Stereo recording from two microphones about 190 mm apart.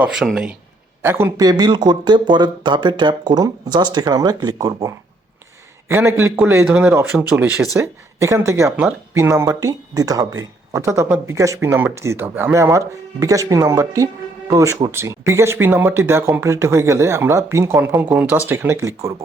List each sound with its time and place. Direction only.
0.0 s a man's voice: 5° right (ahead or behind)